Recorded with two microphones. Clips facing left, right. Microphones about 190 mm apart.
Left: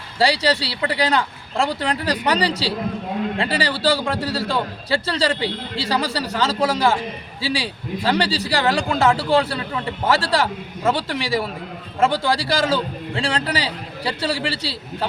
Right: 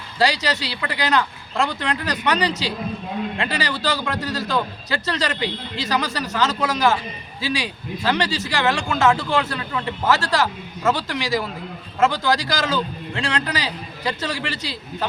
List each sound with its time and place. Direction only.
0.2 s a man's voice: 30° left (ahead or behind)